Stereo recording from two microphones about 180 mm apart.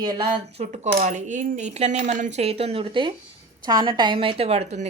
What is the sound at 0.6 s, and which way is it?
Speech, 40° right (ahead or behind).